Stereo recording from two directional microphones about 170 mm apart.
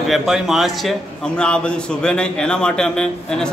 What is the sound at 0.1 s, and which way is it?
A man's voice, centre (ahead or behind).